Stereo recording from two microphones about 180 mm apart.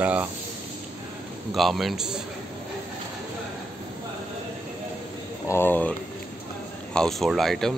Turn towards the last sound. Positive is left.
turn(degrees=0)  # may be behind; listen again after turning